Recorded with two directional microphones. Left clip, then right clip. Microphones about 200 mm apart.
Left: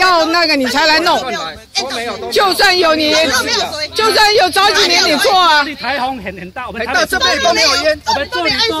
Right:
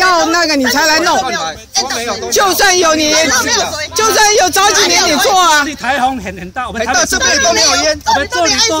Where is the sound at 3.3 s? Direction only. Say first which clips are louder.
Right 2 dB; 35° right (ahead or behind).